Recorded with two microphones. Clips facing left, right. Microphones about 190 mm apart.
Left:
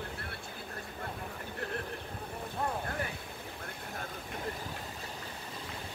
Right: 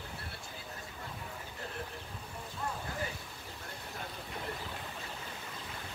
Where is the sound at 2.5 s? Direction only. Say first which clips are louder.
Left 4 dB; 60° left (ahead or behind).